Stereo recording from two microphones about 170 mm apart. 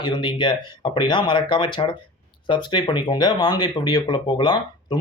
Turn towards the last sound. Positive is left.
turn(degrees=25)  # may be behind; listen again after turning